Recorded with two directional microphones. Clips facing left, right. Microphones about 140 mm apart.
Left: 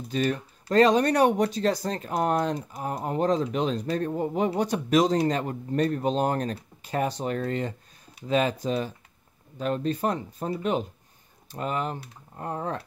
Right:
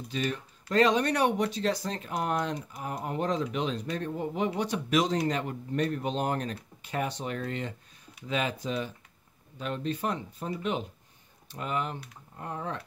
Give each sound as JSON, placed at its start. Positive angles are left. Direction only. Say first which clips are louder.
{"t": 0.1, "sound": "speech", "louder": "left 6 dB", "side_deg": 40}